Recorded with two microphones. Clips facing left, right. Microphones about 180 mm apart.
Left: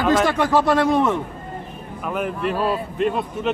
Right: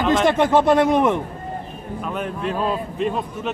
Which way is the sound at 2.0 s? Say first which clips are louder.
Left 2 dB; 5° left (ahead or behind).